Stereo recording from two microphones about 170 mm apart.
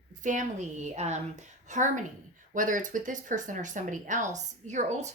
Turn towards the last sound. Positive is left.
turn(degrees=-40)  # may be behind; listen again after turning